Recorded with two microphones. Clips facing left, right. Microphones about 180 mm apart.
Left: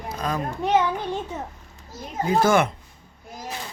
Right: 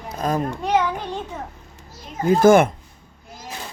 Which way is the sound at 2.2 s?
50° right (ahead or behind).